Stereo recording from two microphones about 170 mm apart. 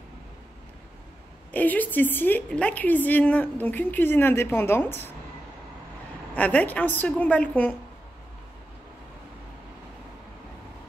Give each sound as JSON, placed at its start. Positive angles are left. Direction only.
{"t": 1.5, "sound": "a woman's voice", "side_deg": 10}
{"t": 6.3, "sound": "a woman's voice", "side_deg": 10}